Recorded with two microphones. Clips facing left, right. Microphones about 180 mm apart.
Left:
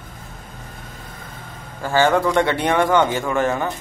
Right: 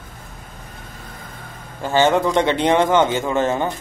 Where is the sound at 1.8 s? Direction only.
20° right (ahead or behind).